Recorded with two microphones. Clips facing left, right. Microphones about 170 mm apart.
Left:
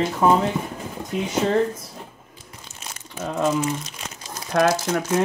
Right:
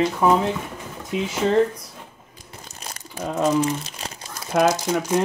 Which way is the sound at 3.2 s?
10° right (ahead or behind).